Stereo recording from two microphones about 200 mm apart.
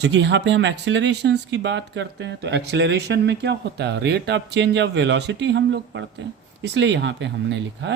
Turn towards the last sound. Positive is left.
turn(degrees=-60)  # may be behind; listen again after turning